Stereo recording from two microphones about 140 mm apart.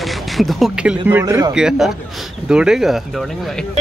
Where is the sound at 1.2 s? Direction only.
25° right (ahead or behind).